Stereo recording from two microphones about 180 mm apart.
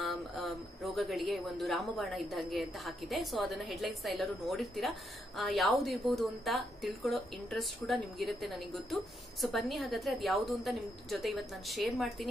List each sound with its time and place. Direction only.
0.0 s speech: centre (ahead or behind)